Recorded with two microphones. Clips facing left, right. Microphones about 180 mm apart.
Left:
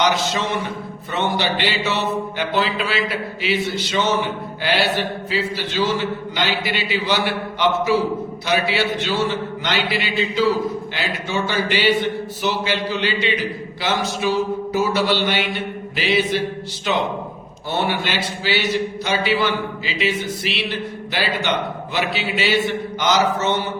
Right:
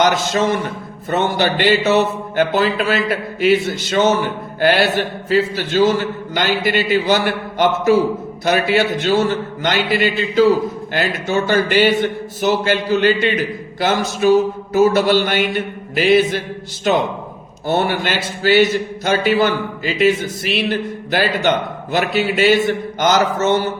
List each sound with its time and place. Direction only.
0.0 s a man's voice: 45° right (ahead or behind)